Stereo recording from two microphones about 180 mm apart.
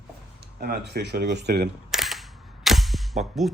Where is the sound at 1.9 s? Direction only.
Centre (ahead or behind).